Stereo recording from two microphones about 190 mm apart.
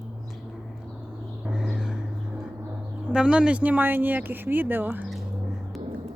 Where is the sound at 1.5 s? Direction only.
5° right (ahead or behind).